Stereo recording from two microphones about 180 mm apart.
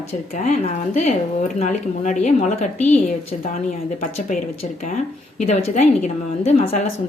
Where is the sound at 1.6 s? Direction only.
40° left (ahead or behind).